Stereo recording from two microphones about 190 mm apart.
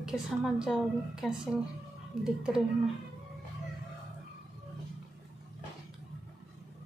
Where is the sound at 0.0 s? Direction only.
Centre (ahead or behind).